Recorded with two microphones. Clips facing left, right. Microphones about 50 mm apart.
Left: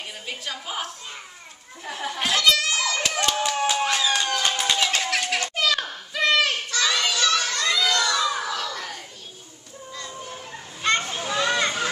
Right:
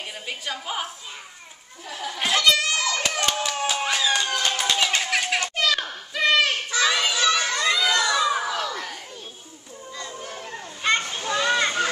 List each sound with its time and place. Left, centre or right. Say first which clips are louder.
0.3 s a sound: right 2 dB; centre
1.9 s speech: left 2 dB; left
2.1 s hands: right 1 dB; centre
4.7 s children playing: right 1 dB; centre
8.6 s crowd: right 1 dB; centre
10.8 s children playing: even; centre